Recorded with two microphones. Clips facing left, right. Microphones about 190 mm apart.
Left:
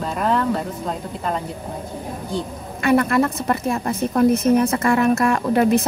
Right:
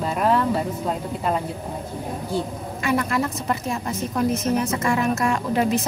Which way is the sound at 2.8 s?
60° left (ahead or behind).